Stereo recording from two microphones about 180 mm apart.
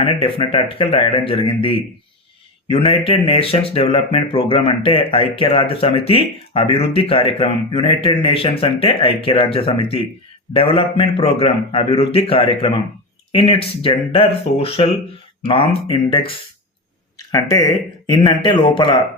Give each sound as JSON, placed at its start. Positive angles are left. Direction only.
{"t": 0.0, "sound": "speech", "side_deg": 30}
{"t": 17.3, "sound": "speech", "side_deg": 20}